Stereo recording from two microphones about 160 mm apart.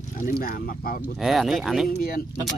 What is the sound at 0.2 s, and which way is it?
Speech, 65° left (ahead or behind).